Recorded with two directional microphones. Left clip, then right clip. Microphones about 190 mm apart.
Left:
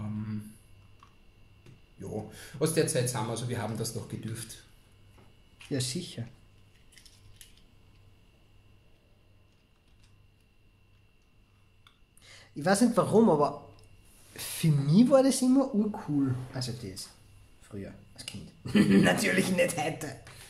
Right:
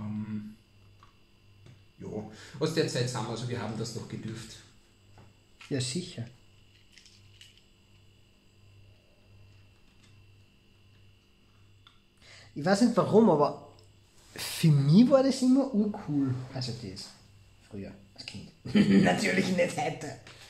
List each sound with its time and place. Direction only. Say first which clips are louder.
2.0 s speech: left 1 dB; 35° left (ahead or behind)
5.7 s speech: even; centre (ahead or behind)
12.2 s a man's voice: right 1 dB; centre (ahead or behind)